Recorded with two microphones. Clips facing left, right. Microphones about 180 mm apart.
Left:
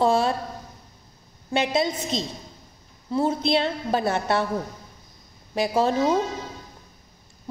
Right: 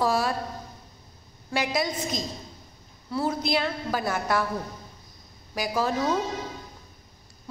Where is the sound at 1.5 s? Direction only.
25° left (ahead or behind).